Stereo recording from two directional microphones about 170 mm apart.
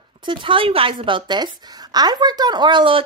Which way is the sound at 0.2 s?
30° right (ahead or behind).